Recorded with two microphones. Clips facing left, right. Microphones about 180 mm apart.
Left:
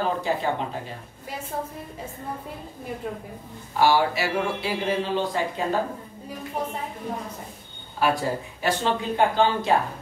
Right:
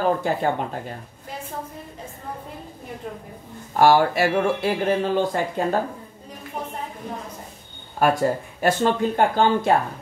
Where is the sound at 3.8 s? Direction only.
50° right (ahead or behind).